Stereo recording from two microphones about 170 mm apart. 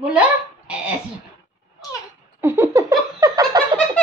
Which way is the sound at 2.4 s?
15° right (ahead or behind).